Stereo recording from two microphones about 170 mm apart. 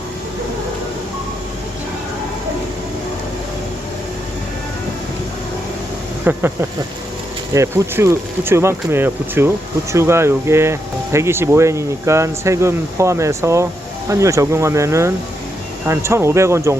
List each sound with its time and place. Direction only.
6.2 s speech: 15° right (ahead or behind)